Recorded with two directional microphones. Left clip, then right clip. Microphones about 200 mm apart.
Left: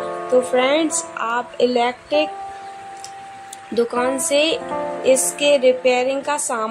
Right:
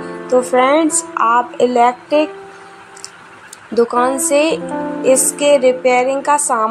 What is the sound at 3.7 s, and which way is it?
Speech, 10° right (ahead or behind).